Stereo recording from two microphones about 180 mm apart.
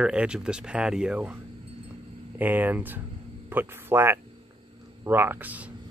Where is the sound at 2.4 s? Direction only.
10° right (ahead or behind).